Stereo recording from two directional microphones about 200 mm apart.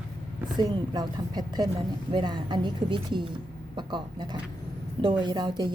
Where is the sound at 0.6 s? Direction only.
20° right (ahead or behind).